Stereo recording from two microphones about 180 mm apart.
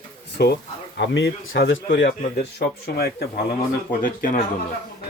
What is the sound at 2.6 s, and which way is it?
Speech, 60° left (ahead or behind).